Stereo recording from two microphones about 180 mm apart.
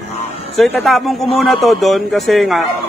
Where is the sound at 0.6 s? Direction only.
Centre (ahead or behind).